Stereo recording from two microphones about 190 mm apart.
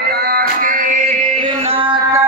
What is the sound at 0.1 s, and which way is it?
Music, 55° right (ahead or behind).